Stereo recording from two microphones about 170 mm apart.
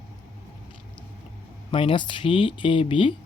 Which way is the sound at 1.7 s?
30° left (ahead or behind).